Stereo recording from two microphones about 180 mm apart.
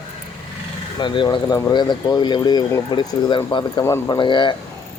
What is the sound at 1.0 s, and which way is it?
Speech, 25° left (ahead or behind).